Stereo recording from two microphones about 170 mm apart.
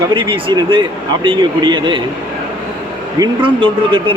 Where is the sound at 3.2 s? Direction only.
30° right (ahead or behind).